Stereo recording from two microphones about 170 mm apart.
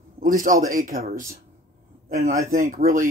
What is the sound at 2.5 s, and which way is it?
Speech, 55° right (ahead or behind).